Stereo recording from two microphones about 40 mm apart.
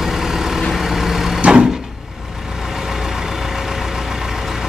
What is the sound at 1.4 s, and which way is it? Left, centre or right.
Vehicle, right.